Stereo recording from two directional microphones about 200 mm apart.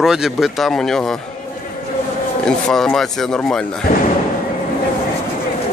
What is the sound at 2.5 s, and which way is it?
Speech, 5° left (ahead or behind).